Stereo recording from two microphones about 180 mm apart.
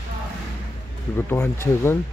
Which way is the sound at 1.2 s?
10° left (ahead or behind).